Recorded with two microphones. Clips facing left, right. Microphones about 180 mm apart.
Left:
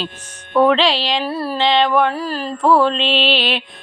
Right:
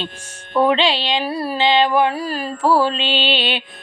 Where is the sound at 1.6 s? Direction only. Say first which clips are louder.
Even; centre (ahead or behind).